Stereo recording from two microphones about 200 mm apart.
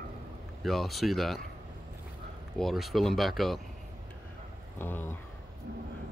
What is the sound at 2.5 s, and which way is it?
Speech, centre (ahead or behind).